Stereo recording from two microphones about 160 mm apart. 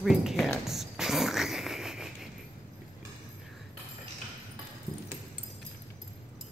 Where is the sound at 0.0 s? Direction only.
Centre (ahead or behind).